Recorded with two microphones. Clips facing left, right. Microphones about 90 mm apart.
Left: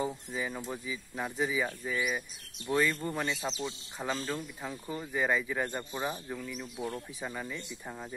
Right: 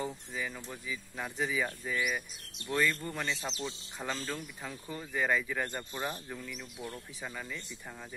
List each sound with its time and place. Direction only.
0.0 s speech: 15° left (ahead or behind)
1.2 s speech: 10° left (ahead or behind)